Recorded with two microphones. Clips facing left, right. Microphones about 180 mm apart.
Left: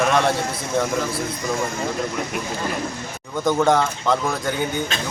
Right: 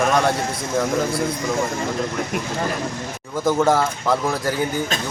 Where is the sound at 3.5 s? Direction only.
5° right (ahead or behind).